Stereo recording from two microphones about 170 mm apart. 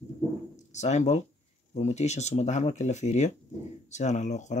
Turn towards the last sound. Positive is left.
turn(degrees=45)  # may be behind; listen again after turning